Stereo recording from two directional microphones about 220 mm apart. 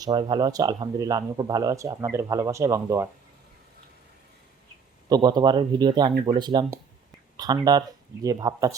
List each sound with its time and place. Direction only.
0.0 s speech: 20° right (ahead or behind)
5.0 s speech: 20° right (ahead or behind)